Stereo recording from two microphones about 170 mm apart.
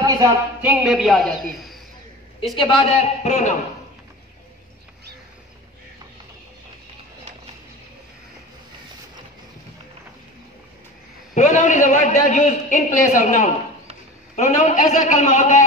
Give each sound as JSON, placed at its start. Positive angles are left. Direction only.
{"t": 0.0, "sound": "a man's voice", "side_deg": -15}
{"t": 2.5, "sound": "a man's voice", "side_deg": 35}
{"t": 11.3, "sound": "a man's voice", "side_deg": 45}